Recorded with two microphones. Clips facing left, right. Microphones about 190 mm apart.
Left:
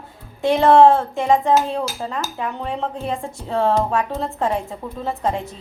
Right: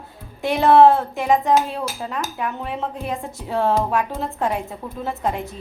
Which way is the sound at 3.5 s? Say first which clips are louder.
Left 1 dB; 5° right (ahead or behind).